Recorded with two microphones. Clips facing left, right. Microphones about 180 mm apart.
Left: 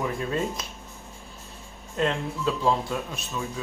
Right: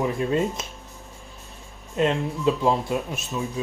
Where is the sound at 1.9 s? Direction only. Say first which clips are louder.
Right 4 dB; 20° right (ahead or behind).